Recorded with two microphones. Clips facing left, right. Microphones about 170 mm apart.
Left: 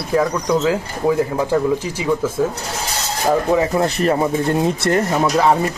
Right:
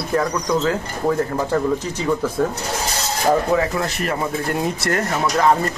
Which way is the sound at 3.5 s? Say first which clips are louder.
Left 3 dB; 20° left (ahead or behind).